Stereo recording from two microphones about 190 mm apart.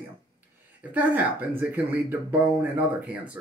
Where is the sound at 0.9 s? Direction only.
10° right (ahead or behind).